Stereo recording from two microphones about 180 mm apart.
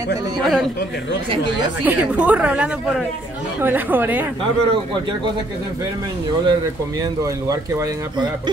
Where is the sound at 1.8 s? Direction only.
10° right (ahead or behind).